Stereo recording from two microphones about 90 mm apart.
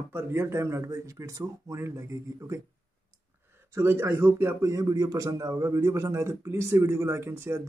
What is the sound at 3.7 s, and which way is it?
Speech, 30° right (ahead or behind).